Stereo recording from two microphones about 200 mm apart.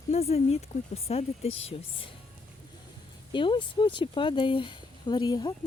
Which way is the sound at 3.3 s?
25° left (ahead or behind).